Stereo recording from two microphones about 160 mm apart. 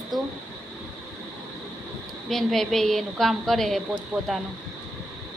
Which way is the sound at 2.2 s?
Centre (ahead or behind).